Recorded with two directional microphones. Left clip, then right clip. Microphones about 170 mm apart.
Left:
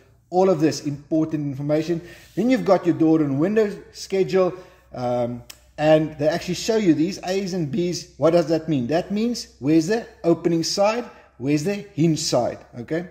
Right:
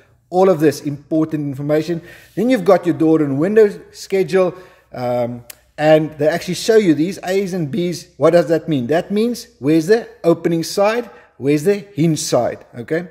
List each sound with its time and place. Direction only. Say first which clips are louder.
0.3 s speech: right 5 dB; 40° right (ahead or behind)